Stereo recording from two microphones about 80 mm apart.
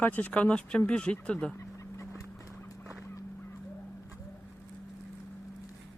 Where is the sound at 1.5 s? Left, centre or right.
Left.